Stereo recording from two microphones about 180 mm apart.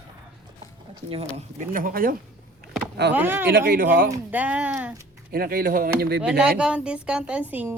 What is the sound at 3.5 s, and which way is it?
Speech, 55° right (ahead or behind).